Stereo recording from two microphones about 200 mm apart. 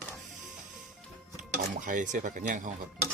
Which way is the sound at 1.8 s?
40° right (ahead or behind).